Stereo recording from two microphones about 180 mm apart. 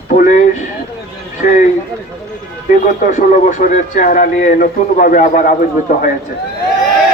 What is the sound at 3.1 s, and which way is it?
A man's voice, 45° left (ahead or behind).